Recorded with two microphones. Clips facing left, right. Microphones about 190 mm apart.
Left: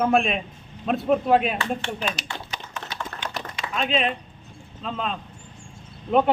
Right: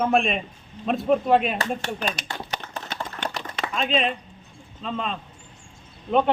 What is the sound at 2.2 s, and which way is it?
Speech, 55° right (ahead or behind).